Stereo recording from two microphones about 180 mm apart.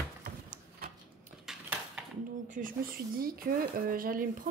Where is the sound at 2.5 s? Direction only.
50° right (ahead or behind).